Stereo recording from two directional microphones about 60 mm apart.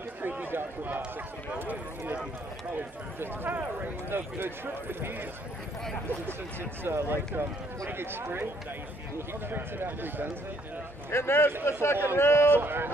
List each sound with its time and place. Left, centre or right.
0.2 s a sound: right
1.5 s speech: right
9.5 s speech: right
11.1 s a man's voice: left
12.5 s speech: right